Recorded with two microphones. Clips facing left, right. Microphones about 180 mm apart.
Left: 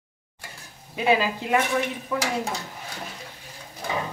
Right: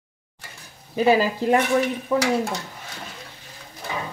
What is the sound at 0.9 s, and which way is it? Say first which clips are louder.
Speech: right 4 dB; 35° right (ahead or behind).